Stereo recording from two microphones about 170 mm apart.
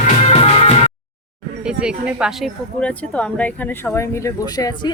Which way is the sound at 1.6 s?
5° right (ahead or behind).